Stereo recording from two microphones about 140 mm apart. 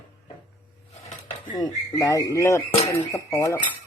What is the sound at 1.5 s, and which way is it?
Speech, 25° left (ahead or behind).